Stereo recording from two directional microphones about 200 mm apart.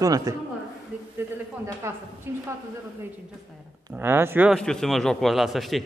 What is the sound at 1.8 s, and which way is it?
Speech, 15° right (ahead or behind).